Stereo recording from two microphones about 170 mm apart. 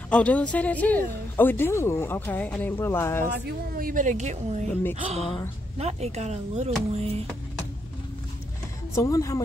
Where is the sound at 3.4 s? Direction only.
55° right (ahead or behind); by 6.7 s 40° right (ahead or behind).